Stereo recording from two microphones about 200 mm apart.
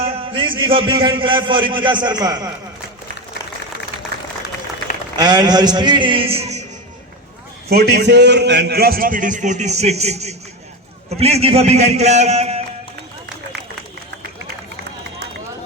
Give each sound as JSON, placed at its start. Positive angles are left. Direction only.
{"t": 0.0, "sound": "a man's voice", "side_deg": -25}
{"t": 5.1, "sound": "a man's voice", "side_deg": -20}
{"t": 7.7, "sound": "a man's voice", "side_deg": -55}